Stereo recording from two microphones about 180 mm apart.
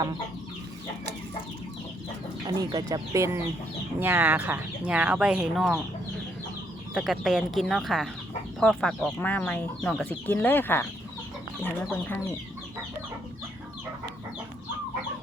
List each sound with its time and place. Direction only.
2.6 s speech: 20° right (ahead or behind); by 5.8 s centre (ahead or behind)
6.9 s speech: centre (ahead or behind)